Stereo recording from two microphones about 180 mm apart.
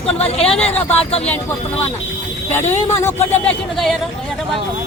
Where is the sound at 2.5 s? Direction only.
15° left (ahead or behind).